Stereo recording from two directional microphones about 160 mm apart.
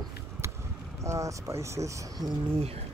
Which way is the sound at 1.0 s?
20° right (ahead or behind).